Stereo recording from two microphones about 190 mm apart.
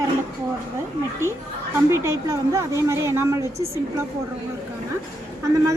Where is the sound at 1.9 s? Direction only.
15° right (ahead or behind).